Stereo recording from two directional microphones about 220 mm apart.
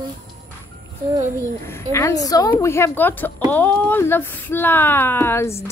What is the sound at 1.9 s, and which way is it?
Speech, 15° left (ahead or behind).